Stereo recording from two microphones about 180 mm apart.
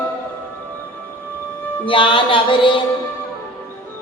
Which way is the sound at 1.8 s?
30° left (ahead or behind).